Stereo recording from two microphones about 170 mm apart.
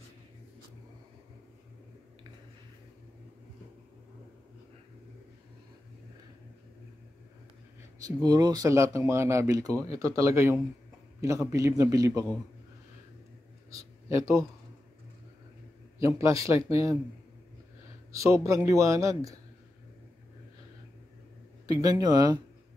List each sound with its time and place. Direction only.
8.2 s speech: 25° right (ahead or behind)
13.7 s a sound: 15° right (ahead or behind)
16.0 s speech: 20° right (ahead or behind)
18.1 s speech: 20° right (ahead or behind)
21.6 s speech: 20° right (ahead or behind)